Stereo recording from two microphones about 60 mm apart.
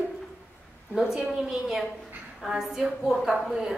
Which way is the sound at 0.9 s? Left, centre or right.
Centre.